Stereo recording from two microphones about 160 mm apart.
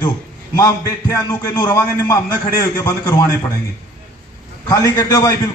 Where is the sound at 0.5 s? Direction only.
20° left (ahead or behind).